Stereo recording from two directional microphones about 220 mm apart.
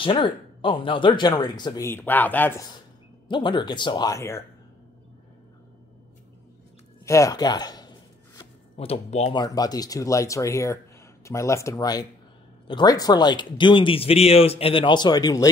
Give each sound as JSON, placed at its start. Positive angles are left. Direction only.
{"t": 0.0, "sound": "speech", "side_deg": 25}
{"t": 3.3, "sound": "speech", "side_deg": 20}
{"t": 7.1, "sound": "speech", "side_deg": 15}